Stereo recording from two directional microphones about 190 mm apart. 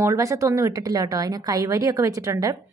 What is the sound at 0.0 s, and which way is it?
A woman's voice, 15° right (ahead or behind).